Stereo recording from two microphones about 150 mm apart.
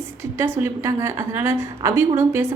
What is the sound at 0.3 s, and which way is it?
A woman's voice, 15° right (ahead or behind).